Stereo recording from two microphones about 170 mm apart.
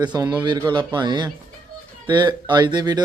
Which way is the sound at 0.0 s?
25° right (ahead or behind).